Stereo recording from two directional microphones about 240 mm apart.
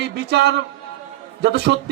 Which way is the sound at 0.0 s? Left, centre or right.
Right.